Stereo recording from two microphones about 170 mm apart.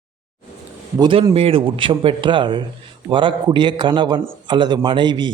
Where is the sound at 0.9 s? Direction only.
30° right (ahead or behind).